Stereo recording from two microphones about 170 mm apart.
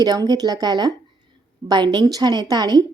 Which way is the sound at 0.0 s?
20° right (ahead or behind).